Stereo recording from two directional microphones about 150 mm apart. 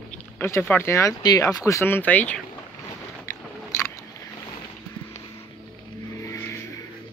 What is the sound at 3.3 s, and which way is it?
Biting, 15° left (ahead or behind).